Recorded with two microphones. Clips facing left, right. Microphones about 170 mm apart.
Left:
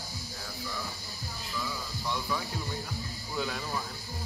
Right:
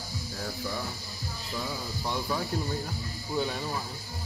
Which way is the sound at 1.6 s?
40° right (ahead or behind).